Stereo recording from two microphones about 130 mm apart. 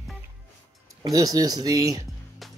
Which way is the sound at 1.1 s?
30° right (ahead or behind).